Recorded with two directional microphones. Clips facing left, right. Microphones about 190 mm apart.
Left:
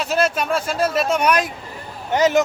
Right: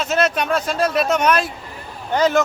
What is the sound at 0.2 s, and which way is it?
Speech, 5° left (ahead or behind).